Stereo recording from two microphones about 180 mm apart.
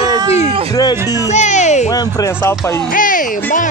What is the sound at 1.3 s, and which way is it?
Speech, 40° left (ahead or behind).